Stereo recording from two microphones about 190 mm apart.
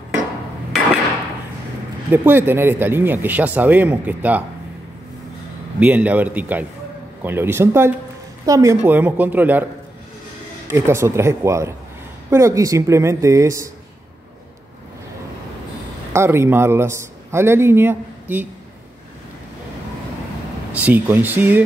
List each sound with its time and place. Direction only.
2.0 s a man's voice: 10° right (ahead or behind)
5.8 s a man's voice: 5° right (ahead or behind)
10.7 s a man's voice: 15° right (ahead or behind)
16.1 s a man's voice: 15° right (ahead or behind)
20.7 s a man's voice: 10° right (ahead or behind)